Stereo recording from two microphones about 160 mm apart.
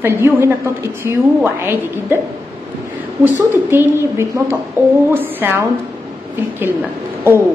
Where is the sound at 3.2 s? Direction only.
15° right (ahead or behind).